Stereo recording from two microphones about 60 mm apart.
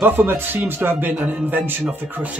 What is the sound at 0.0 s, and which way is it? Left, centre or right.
Music, right.